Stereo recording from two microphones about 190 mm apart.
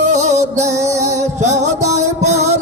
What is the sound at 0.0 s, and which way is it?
Music, 35° right (ahead or behind).